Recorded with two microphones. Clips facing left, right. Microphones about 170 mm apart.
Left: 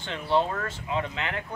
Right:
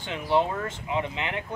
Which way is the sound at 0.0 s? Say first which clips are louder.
Right 1 dB; 15° right (ahead or behind).